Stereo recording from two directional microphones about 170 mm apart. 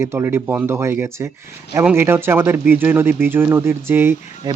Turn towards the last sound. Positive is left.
turn(degrees=-15)  # may be behind; listen again after turning